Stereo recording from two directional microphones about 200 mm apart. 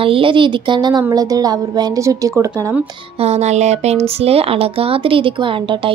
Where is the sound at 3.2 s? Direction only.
35° right (ahead or behind).